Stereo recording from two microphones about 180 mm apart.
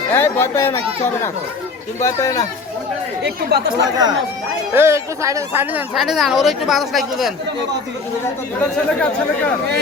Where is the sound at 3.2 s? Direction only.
65° right (ahead or behind).